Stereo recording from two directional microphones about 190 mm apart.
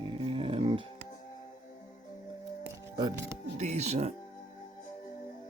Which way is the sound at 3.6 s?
35° right (ahead or behind).